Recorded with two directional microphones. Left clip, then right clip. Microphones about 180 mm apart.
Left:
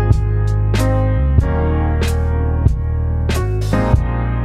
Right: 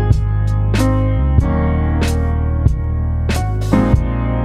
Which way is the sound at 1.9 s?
Centre (ahead or behind).